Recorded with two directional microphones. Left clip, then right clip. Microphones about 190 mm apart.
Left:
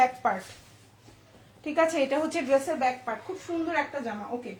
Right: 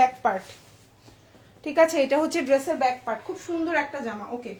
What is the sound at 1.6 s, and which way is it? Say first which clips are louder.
A woman's voice: right 5 dB; 50° right (ahead or behind).